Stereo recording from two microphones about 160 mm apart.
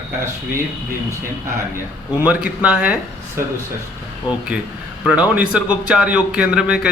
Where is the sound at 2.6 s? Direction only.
5° right (ahead or behind).